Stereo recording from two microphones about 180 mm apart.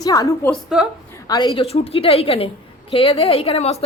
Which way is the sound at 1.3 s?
25° left (ahead or behind).